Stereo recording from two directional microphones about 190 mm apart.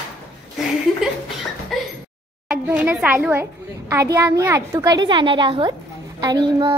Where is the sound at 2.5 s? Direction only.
5° right (ahead or behind).